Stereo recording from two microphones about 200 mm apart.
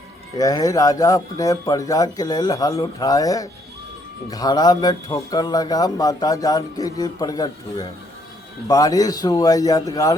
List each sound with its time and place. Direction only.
0.3 s speech: 20° left (ahead or behind)